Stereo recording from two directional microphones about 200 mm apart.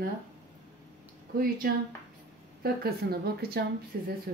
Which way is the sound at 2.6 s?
50° right (ahead or behind).